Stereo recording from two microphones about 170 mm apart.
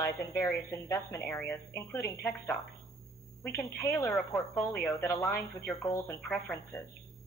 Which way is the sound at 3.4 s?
10° left (ahead or behind).